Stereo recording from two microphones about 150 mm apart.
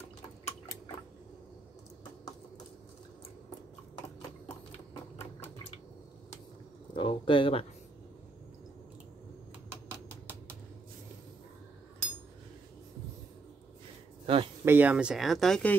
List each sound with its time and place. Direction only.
7.0 s speech: 35° left (ahead or behind)
14.2 s speech: 40° right (ahead or behind)
14.6 s speech: 15° right (ahead or behind); by 15.8 s 5° left (ahead or behind)